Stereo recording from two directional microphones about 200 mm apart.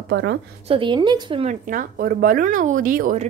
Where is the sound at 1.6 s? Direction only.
45° right (ahead or behind).